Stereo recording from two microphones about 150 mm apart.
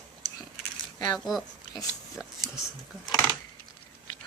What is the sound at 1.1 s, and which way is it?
Speech, centre (ahead or behind).